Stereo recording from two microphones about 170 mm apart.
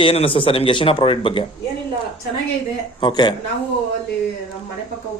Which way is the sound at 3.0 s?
25° left (ahead or behind).